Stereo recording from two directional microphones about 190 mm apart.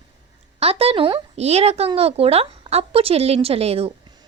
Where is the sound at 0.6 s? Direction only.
30° right (ahead or behind).